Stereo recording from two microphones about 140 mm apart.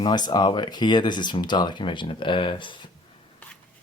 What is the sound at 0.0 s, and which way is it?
Speech, 30° left (ahead or behind).